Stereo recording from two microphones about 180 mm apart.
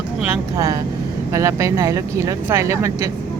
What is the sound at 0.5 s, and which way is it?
Speech, 15° right (ahead or behind).